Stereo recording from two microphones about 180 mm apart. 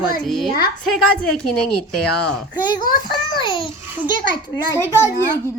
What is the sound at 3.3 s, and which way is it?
Speech, 25° left (ahead or behind).